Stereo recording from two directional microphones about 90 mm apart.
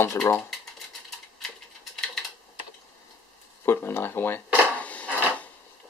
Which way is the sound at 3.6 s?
25° left (ahead or behind).